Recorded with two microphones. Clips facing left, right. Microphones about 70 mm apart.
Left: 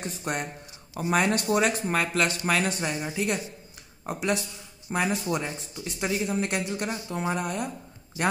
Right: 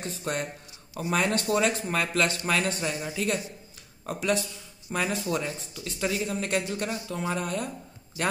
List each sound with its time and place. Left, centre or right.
0.0 s speech: centre